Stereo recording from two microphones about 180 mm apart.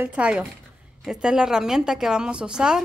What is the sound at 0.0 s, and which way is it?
A woman's voice, 5° right (ahead or behind).